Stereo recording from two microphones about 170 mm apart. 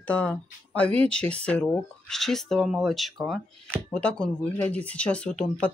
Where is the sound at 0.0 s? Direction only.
10° left (ahead or behind).